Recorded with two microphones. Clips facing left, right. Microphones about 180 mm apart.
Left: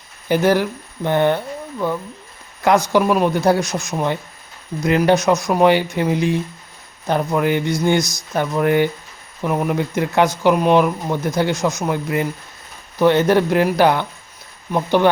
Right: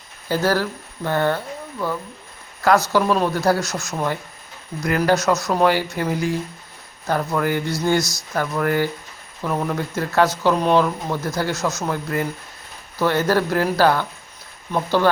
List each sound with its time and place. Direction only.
0.3 s speech: 20° left (ahead or behind)